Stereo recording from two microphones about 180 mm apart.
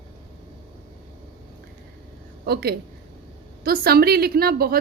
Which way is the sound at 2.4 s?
60° right (ahead or behind).